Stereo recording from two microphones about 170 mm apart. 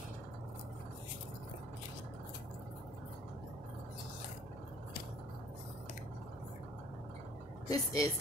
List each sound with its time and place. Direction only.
7.6 s speech: 20° left (ahead or behind)